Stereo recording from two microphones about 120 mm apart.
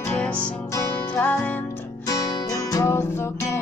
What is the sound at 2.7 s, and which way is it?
Music, 25° left (ahead or behind).